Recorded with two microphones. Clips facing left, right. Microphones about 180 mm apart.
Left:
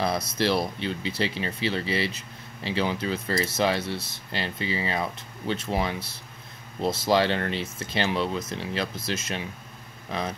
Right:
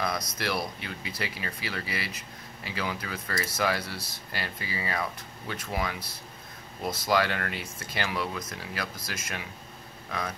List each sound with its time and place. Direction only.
0.0 s speech: 25° left (ahead or behind)